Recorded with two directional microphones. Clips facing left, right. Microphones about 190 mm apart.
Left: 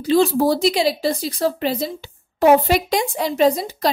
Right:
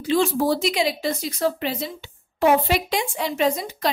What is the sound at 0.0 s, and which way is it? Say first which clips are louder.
A woman's voice: left 4 dB; 35° left (ahead or behind).